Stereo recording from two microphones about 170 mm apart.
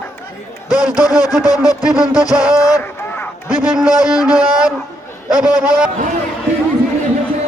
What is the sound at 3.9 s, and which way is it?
Music, 20° left (ahead or behind).